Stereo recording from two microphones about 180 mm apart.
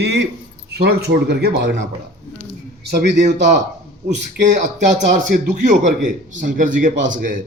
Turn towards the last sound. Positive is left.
turn(degrees=-45)  # may be behind; listen again after turning